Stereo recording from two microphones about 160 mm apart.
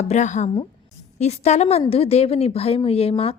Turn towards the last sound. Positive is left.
turn(degrees=35)  # may be behind; listen again after turning